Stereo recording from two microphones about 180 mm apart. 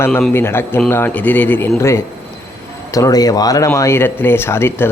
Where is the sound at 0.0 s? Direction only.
10° left (ahead or behind).